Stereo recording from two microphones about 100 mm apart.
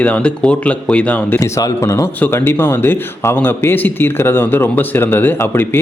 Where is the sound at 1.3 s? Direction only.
30° left (ahead or behind).